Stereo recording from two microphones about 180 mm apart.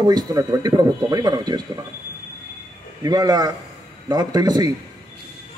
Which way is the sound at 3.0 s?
20° right (ahead or behind).